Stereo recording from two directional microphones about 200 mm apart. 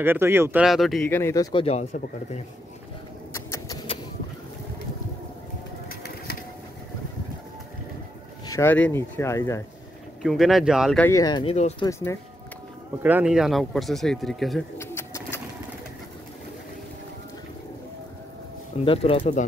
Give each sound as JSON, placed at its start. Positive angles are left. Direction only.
{"t": 0.0, "sound": "speech", "side_deg": -10}
{"t": 1.0, "sound": "speech", "side_deg": 10}
{"t": 3.3, "sound": "rodents", "side_deg": 15}
{"t": 8.5, "sound": "speech", "side_deg": 10}
{"t": 10.2, "sound": "speech", "side_deg": 0}
{"t": 11.1, "sound": "speech", "side_deg": 20}
{"t": 13.0, "sound": "speech", "side_deg": -5}
{"t": 14.8, "sound": "bird", "side_deg": 10}
{"t": 18.9, "sound": "speech", "side_deg": 30}